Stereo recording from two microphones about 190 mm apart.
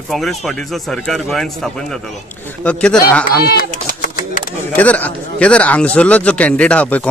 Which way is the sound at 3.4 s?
50° left (ahead or behind).